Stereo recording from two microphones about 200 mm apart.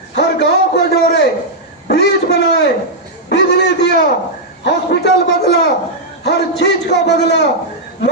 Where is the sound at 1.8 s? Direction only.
55° left (ahead or behind).